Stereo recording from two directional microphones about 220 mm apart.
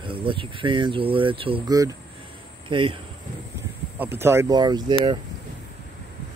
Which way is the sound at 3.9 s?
10° right (ahead or behind).